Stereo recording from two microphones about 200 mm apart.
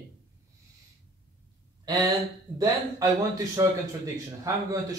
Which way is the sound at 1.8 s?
20° right (ahead or behind).